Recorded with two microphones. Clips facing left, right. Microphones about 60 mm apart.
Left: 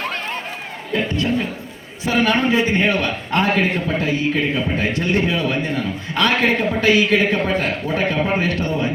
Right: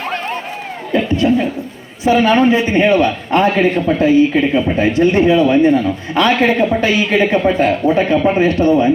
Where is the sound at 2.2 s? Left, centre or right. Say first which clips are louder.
Right 2 dB; centre.